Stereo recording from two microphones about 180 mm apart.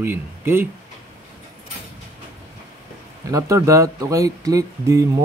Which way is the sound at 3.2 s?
15° right (ahead or behind).